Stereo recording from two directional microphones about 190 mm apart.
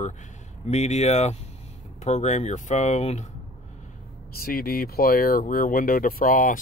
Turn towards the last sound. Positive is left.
turn(degrees=45)  # may be behind; listen again after turning